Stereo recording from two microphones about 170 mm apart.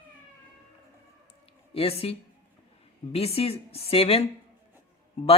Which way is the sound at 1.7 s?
35° left (ahead or behind).